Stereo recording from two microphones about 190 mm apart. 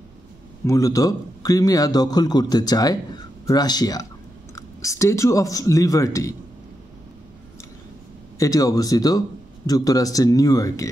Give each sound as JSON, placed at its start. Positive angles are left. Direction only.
{"t": 0.7, "sound": "a man's voice", "side_deg": 15}
{"t": 8.4, "sound": "a man's voice", "side_deg": 20}